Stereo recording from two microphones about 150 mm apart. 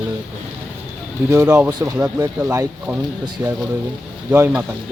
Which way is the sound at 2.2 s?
20° right (ahead or behind).